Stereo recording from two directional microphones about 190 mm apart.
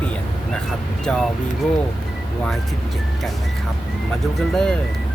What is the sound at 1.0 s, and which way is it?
Speech, 5° left (ahead or behind).